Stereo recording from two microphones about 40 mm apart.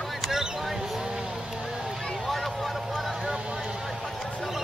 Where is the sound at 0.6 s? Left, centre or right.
Centre.